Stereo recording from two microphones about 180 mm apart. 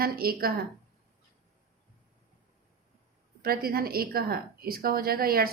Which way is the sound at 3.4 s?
55° right (ahead or behind).